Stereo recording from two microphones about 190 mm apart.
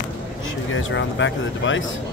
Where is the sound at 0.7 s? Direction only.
85° left.